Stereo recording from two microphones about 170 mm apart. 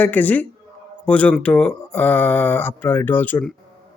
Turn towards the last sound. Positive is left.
turn(degrees=10)  # may be behind; listen again after turning